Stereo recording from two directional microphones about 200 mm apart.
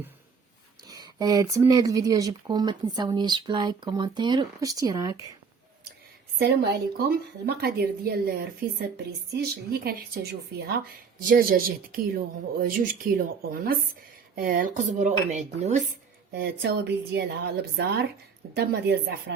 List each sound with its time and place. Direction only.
0.9 s speech: 20° right (ahead or behind)
6.4 s a woman's voice: 50° right (ahead or behind)
9.3 s a woman's voice: 50° right (ahead or behind)
11.2 s a woman's voice: 45° right (ahead or behind)
16.3 s a woman's voice: 55° right (ahead or behind)